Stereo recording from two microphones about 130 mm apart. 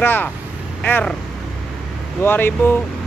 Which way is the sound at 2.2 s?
15° left (ahead or behind).